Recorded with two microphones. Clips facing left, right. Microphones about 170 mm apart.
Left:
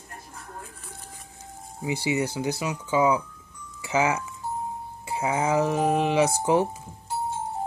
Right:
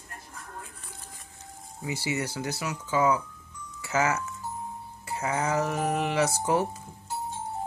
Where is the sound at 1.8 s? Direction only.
15° left (ahead or behind).